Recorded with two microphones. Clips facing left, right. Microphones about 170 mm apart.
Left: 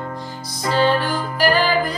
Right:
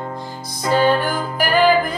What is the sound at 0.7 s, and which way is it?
Music, 50° right (ahead or behind).